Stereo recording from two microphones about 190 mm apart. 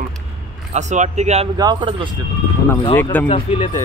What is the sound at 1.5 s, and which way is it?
Speech, 25° right (ahead or behind).